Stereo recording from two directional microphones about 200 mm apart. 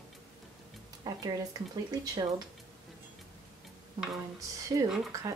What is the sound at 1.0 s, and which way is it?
Speech, 20° right (ahead or behind).